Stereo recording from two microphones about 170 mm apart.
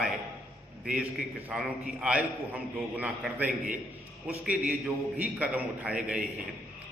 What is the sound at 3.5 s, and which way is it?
Speech, 50° right (ahead or behind).